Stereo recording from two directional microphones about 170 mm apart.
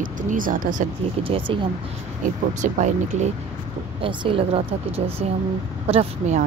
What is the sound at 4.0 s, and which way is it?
Speech, 30° right (ahead or behind).